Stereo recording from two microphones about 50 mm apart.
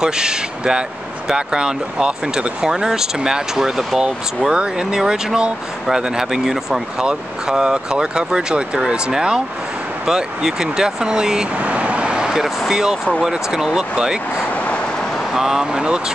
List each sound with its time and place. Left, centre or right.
0.0 s speech: centre
11.5 s speech: right
14.5 s vehicle: left
15.3 s speech: centre